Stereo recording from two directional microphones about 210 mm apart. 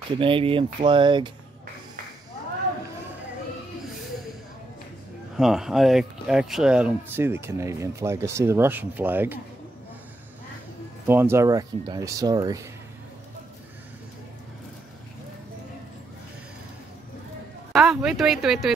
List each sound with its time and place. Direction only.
0.1 s speech: 25° right (ahead or behind)
5.3 s speech: centre (ahead or behind)
11.1 s speech: 10° right (ahead or behind)
17.7 s speech: centre (ahead or behind)